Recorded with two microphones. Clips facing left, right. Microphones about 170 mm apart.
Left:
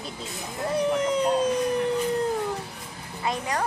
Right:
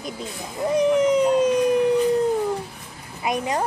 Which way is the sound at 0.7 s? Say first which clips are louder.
Right 6 dB; 10° right (ahead or behind).